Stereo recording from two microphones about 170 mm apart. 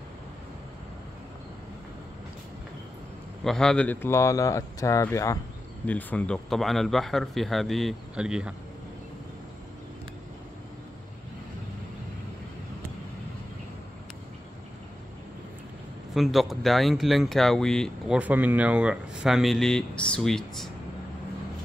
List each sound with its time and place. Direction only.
3.4 s speech: 5° left (ahead or behind)
16.2 s speech: centre (ahead or behind)